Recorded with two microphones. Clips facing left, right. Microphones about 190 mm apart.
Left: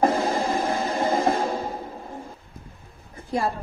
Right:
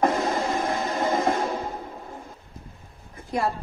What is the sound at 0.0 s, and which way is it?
Music, 30° left (ahead or behind).